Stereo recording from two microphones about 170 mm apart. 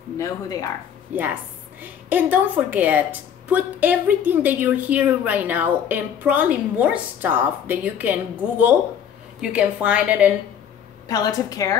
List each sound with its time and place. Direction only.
0.2 s a woman's voice: 20° left (ahead or behind)
1.1 s a woman's voice: 10° right (ahead or behind)
11.1 s a woman's voice: 20° left (ahead or behind)